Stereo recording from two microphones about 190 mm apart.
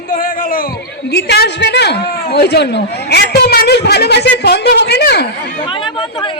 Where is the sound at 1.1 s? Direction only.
60° left (ahead or behind).